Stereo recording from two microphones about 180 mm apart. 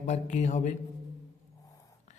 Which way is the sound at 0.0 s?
40° left (ahead or behind).